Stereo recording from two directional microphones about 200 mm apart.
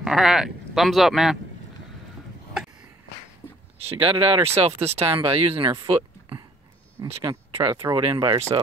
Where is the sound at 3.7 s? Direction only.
30° right (ahead or behind).